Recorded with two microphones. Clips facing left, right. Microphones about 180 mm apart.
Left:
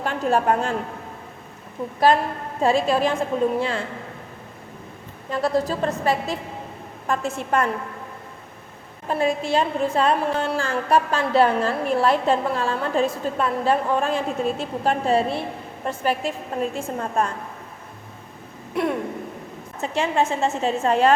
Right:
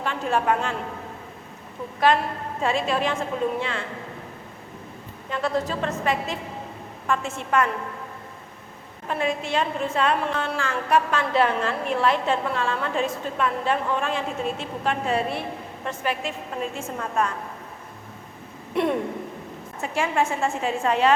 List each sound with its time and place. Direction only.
0.0 s a woman's voice: 40° left (ahead or behind)
2.1 s a woman's voice: 35° left (ahead or behind)
5.3 s a woman's voice: 35° left (ahead or behind)
9.0 s a woman's voice: 35° left (ahead or behind)
18.7 s a sound: centre (ahead or behind)
19.8 s a woman's voice: 20° left (ahead or behind)
20.8 s a woman's voice: 45° left (ahead or behind)